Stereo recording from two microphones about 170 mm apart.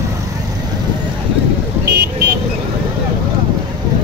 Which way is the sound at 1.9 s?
75° right (ahead or behind).